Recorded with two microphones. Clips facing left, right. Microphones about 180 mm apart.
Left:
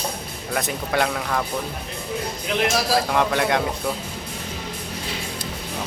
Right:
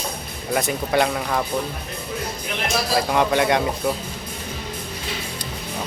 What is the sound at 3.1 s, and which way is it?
Speech, centre (ahead or behind).